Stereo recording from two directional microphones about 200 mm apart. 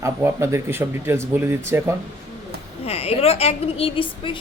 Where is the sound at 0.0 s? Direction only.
10° right (ahead or behind).